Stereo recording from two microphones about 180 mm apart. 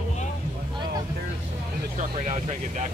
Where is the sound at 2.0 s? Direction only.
40° right (ahead or behind).